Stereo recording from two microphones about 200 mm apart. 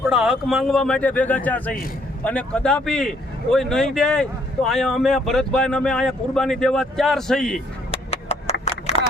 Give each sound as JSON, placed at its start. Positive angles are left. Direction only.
{"t": 0.1, "sound": "speech", "side_deg": -5}
{"t": 8.1, "sound": "wood", "side_deg": 30}